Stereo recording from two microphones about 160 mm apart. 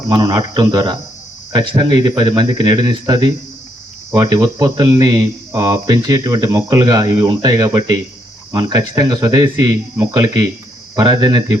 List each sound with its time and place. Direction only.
0.1 s speech: 25° right (ahead or behind)